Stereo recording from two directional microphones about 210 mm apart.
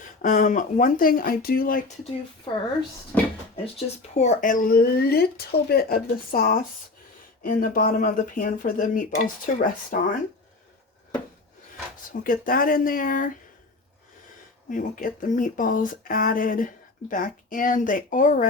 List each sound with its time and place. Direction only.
0.2 s speech: 40° left (ahead or behind)
2.5 s a woman's voice: 20° left (ahead or behind)
3.1 s a sound: 10° left (ahead or behind)
4.1 s speech: 35° left (ahead or behind)
12.2 s speech: 40° left (ahead or behind)
14.7 s speech: 40° left (ahead or behind)